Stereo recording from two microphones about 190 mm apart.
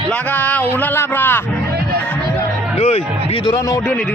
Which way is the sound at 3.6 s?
15° left (ahead or behind).